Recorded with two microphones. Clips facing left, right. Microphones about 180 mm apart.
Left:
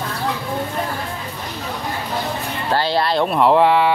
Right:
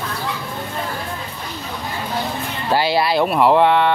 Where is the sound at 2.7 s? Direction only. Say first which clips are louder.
Right 1 dB; 10° right (ahead or behind).